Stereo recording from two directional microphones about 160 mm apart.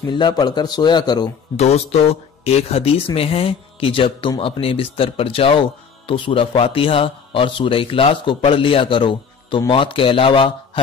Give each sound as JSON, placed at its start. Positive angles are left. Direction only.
{"t": 0.0, "sound": "a man's voice", "side_deg": 30}
{"t": 1.6, "sound": "speech", "side_deg": 40}